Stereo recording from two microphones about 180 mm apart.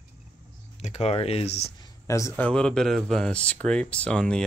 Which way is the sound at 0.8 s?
35° left (ahead or behind).